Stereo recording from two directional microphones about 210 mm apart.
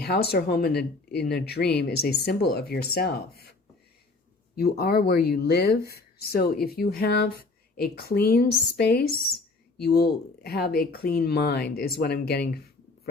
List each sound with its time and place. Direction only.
0.0 s speech: 50° left (ahead or behind)
4.5 s speech: 45° left (ahead or behind)